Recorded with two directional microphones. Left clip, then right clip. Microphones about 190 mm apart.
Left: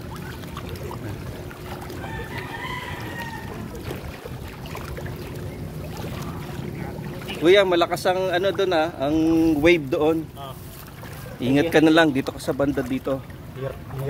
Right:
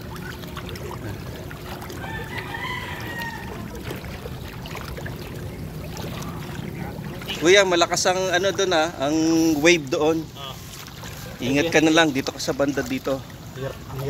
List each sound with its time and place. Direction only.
7.2 s speech: 5° left (ahead or behind)
11.7 s speech: 20° left (ahead or behind)
12.1 s speech: 10° left (ahead or behind)